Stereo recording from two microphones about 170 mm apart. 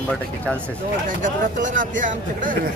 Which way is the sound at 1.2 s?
50° right (ahead or behind).